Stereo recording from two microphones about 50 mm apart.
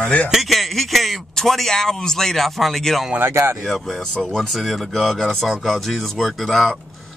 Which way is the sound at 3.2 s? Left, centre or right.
Right.